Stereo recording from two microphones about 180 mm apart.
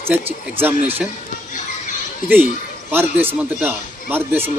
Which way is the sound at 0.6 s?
10° right (ahead or behind).